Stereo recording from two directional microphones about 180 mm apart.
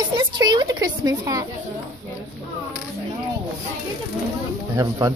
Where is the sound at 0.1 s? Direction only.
25° right (ahead or behind).